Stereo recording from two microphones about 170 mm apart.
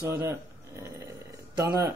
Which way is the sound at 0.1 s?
15° right (ahead or behind).